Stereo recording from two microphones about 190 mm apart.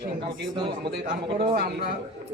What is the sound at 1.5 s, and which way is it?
Speech, 50° right (ahead or behind).